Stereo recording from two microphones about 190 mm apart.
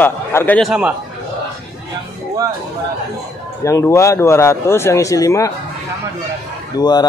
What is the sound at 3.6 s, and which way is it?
Speech, 15° left (ahead or behind).